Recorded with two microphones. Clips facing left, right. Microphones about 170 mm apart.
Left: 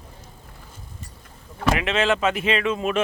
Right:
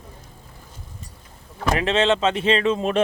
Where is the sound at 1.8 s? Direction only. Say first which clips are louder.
Right 5 dB; 30° right (ahead or behind).